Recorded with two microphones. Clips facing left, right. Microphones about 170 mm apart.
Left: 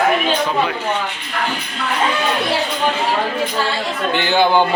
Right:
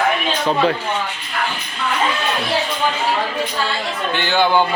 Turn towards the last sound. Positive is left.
turn(degrees=15)  # may be behind; listen again after turning